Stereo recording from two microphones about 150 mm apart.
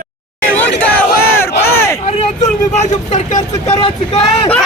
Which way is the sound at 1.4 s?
20° left (ahead or behind).